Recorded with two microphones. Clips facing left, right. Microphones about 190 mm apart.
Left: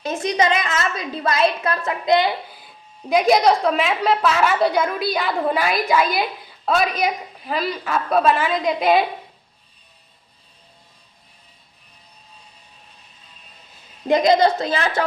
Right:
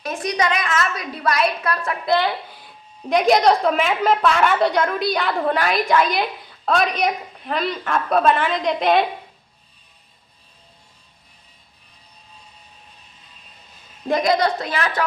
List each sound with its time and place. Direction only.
0.0 s a woman's voice: 25° left (ahead or behind)
3.1 s a woman's voice: centre (ahead or behind)
14.1 s a woman's voice: 20° left (ahead or behind)